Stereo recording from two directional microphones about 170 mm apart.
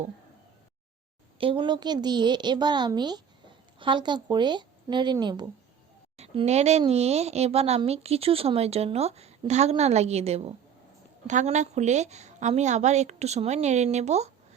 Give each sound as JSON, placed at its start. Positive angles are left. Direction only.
{"t": 1.4, "sound": "a woman's voice", "side_deg": -30}
{"t": 6.1, "sound": "speech", "side_deg": -40}